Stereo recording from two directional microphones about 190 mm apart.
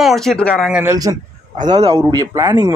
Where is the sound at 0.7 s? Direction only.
10° right (ahead or behind).